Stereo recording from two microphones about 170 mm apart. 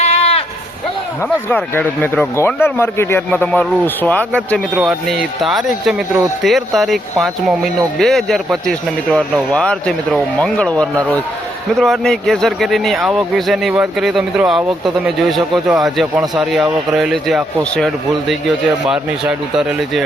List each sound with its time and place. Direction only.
0.0 s sheep: 40° left (ahead or behind)
1.5 s a man's voice: 10° left (ahead or behind)